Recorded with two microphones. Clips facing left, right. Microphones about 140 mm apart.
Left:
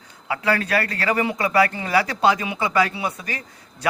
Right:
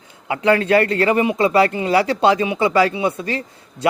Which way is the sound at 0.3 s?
25° right (ahead or behind).